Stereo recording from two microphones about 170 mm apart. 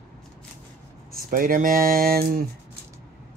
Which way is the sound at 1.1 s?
55° right (ahead or behind).